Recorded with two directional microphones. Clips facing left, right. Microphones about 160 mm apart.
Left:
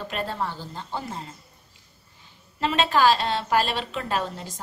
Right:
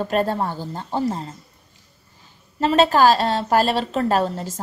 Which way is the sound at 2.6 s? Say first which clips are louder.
Right 6 dB; 40° right (ahead or behind).